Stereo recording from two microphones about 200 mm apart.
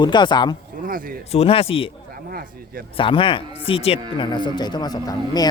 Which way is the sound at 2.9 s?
25° left (ahead or behind).